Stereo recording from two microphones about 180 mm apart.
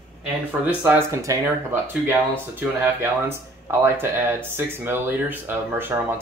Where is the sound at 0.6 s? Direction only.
10° right (ahead or behind).